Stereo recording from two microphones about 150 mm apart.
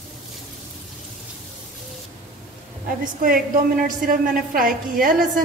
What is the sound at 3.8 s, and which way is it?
A woman's voice, 70° right (ahead or behind).